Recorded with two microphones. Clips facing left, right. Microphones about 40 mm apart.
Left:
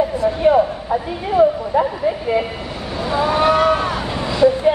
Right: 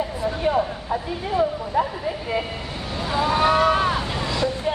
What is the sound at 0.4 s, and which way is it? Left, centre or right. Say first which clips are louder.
Speech: left 8 dB; centre.